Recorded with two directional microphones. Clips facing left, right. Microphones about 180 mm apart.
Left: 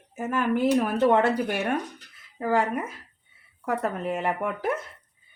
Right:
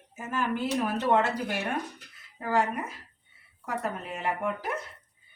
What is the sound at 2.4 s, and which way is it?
Speech, 55° left (ahead or behind).